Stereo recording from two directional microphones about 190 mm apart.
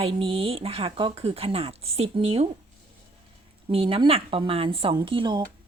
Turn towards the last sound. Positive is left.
turn(degrees=-25)  # may be behind; listen again after turning